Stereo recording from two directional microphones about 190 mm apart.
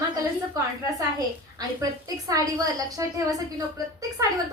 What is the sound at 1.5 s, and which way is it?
A woman's voice, 20° right (ahead or behind).